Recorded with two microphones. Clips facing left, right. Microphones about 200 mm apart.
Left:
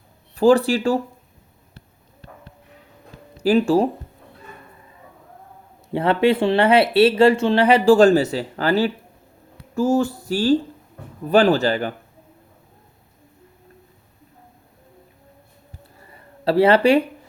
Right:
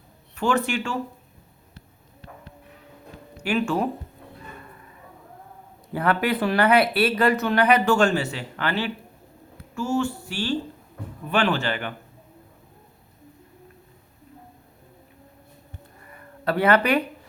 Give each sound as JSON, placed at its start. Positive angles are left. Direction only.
{"t": 0.3, "sound": "speech", "side_deg": 35}
{"t": 3.3, "sound": "speech", "side_deg": 35}
{"t": 5.9, "sound": "speech", "side_deg": 25}
{"t": 16.0, "sound": "a sound", "side_deg": 30}